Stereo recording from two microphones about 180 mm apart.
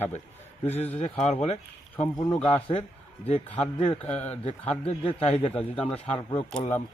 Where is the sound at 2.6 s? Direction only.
30° left (ahead or behind).